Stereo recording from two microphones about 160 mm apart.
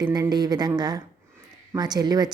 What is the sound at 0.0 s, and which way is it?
A woman's voice, 25° right (ahead or behind).